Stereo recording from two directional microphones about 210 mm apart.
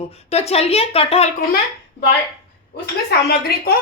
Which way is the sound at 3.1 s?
50° left (ahead or behind).